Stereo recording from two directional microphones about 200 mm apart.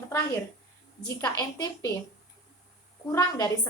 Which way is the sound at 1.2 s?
20° left (ahead or behind).